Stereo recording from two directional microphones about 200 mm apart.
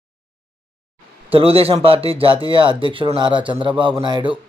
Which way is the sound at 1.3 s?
30° right (ahead or behind).